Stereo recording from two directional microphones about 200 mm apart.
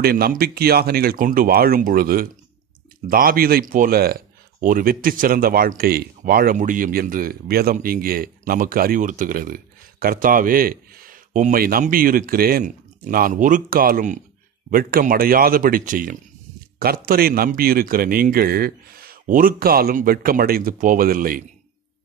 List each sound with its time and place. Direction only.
0.0 s speech: 50° right (ahead or behind)